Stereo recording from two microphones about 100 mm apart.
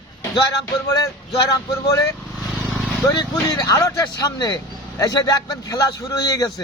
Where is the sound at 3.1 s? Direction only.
45° left (ahead or behind).